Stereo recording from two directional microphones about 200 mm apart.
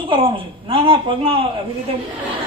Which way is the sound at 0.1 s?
25° right (ahead or behind).